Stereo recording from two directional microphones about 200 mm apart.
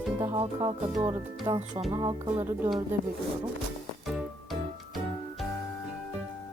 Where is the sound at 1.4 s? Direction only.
25° right (ahead or behind).